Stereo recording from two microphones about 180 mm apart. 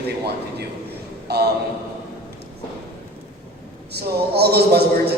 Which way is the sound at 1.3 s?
65° right (ahead or behind).